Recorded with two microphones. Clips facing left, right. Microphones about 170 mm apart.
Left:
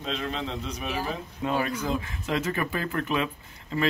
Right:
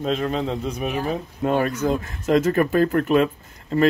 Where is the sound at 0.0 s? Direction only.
45° right (ahead or behind).